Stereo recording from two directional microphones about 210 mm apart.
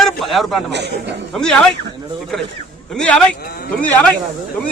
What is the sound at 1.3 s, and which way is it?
Speech, centre (ahead or behind).